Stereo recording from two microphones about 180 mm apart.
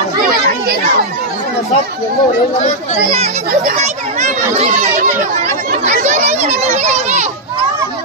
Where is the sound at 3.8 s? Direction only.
40° right (ahead or behind).